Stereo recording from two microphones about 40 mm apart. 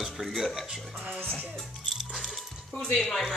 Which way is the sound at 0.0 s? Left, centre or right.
Centre.